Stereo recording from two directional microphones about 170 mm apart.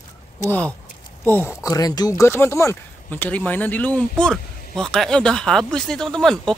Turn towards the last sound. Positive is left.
turn(degrees=5)  # may be behind; listen again after turning